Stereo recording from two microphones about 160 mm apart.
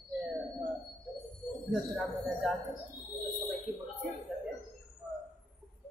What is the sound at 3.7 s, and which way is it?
Speech, centre (ahead or behind).